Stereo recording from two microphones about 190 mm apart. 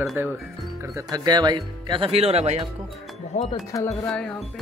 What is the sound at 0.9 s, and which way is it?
Speech, 20° right (ahead or behind).